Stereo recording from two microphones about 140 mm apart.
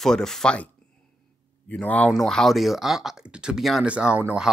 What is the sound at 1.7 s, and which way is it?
Speech, 10° left (ahead or behind).